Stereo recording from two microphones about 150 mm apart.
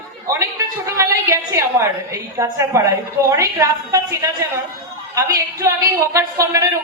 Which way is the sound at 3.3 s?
20° right (ahead or behind).